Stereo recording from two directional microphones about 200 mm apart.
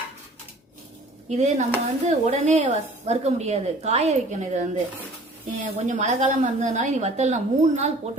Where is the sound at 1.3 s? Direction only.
35° right (ahead or behind).